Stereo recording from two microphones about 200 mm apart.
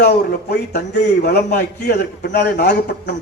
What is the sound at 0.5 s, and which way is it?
A man's voice, 55° left (ahead or behind).